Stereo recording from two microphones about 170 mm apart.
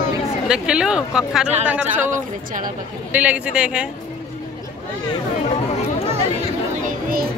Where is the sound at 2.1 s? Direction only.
50° right (ahead or behind).